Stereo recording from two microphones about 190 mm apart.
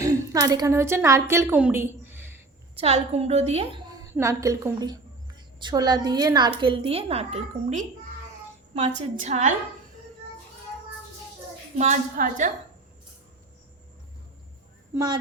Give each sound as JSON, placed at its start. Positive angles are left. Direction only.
{"t": 0.0, "sound": "a woman's voice", "side_deg": -20}
{"t": 2.7, "sound": "a woman's voice", "side_deg": -35}
{"t": 4.1, "sound": "a woman's voice", "side_deg": -15}
{"t": 11.8, "sound": "a woman's voice", "side_deg": -40}
{"t": 14.9, "sound": "a woman's voice", "side_deg": -20}